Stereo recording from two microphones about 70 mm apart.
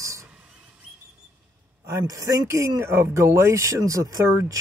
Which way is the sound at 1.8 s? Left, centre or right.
Right.